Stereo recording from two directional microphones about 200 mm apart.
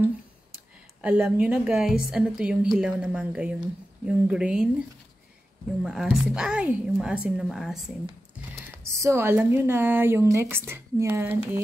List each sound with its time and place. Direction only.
1.0 s a woman's voice: 5° right (ahead or behind)
5.8 s a woman's voice: 5° right (ahead or behind)
8.9 s a woman's voice: 15° right (ahead or behind)